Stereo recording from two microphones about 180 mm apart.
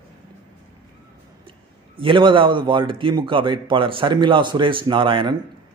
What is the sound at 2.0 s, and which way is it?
A man's voice, 25° right (ahead or behind).